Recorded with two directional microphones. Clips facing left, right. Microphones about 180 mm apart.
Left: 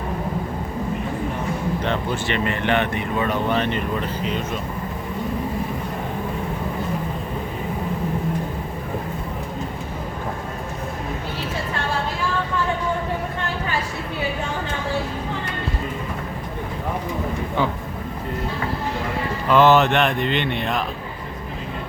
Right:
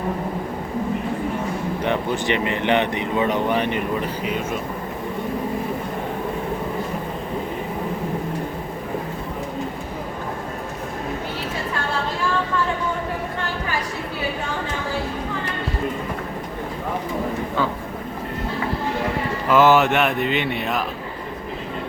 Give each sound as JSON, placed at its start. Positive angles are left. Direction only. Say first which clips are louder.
{"t": 1.8, "sound": "speech", "louder": "right 2 dB", "side_deg": -15}
{"t": 19.5, "sound": "speech", "louder": "even", "side_deg": -5}